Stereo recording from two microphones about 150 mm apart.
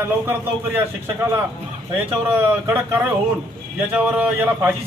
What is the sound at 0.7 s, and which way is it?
Speech, 15° right (ahead or behind).